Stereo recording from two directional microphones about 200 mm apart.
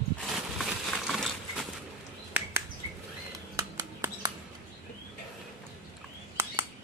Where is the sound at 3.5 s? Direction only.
15° right (ahead or behind).